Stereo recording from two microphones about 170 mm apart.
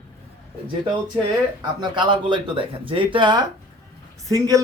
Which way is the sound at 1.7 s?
25° right (ahead or behind).